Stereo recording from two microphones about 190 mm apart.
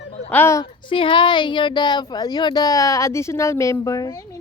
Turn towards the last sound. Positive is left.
turn(degrees=20)  # may be behind; listen again after turning